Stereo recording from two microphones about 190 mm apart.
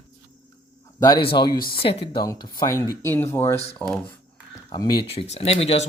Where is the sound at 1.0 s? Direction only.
25° left (ahead or behind); by 4.1 s 5° left (ahead or behind).